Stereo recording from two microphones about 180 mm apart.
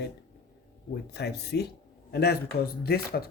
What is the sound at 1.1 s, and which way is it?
Speech, 65° left (ahead or behind).